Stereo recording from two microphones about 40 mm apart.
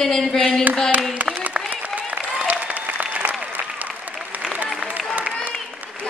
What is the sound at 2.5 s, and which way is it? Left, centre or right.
Applause, right.